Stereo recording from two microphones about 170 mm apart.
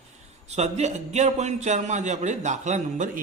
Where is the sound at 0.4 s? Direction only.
40° right (ahead or behind).